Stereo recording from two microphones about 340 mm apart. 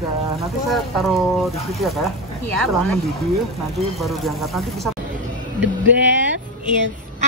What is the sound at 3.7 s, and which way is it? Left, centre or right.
Speech, centre.